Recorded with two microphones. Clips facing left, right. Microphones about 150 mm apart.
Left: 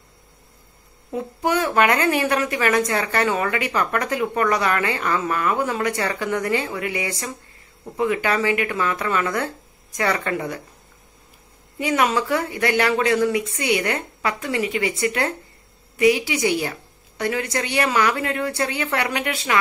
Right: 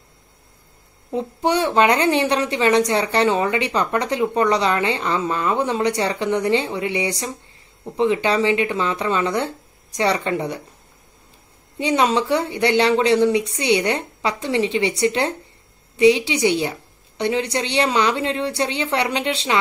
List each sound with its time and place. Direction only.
1.1 s a woman's voice: 25° right (ahead or behind)
11.8 s a woman's voice: 25° right (ahead or behind)